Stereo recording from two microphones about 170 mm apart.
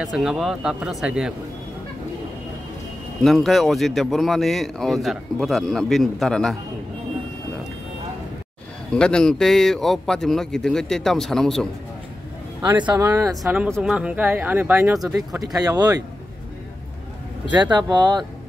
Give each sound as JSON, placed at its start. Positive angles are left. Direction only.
{"t": 0.0, "sound": "speech", "side_deg": 0}
{"t": 3.2, "sound": "speech", "side_deg": 0}
{"t": 8.9, "sound": "speech", "side_deg": 5}
{"t": 12.6, "sound": "speech", "side_deg": -25}
{"t": 15.4, "sound": "speech", "side_deg": -20}
{"t": 17.5, "sound": "speech", "side_deg": -25}